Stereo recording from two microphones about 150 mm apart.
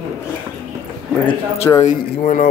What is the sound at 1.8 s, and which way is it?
Speech, 55° left (ahead or behind).